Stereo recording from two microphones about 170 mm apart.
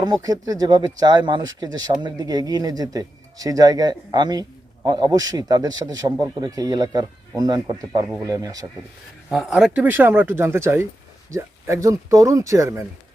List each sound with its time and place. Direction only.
0.0 s speech: 20° right (ahead or behind)
9.3 s speech: centre (ahead or behind); by 12.8 s 15° right (ahead or behind)